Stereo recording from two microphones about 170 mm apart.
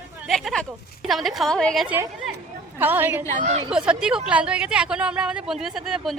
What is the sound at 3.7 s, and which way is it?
Speech, 5° right (ahead or behind).